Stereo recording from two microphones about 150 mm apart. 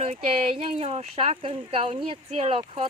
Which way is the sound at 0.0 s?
40° right (ahead or behind).